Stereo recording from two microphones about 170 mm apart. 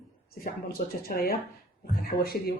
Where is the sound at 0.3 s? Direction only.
60° left (ahead or behind).